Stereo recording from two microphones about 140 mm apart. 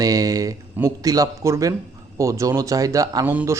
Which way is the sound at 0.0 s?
25° right (ahead or behind).